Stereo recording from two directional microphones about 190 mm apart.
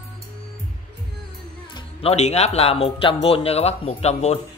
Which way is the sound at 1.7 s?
25° left (ahead or behind).